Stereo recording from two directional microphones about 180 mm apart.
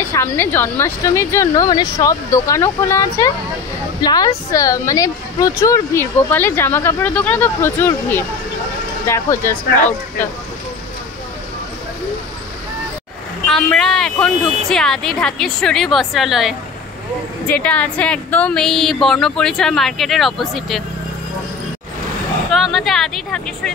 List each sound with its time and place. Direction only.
0.1 s speech: 15° left (ahead or behind)
13.5 s a woman's voice: 5° left (ahead or behind)
22.5 s a woman's voice: centre (ahead or behind)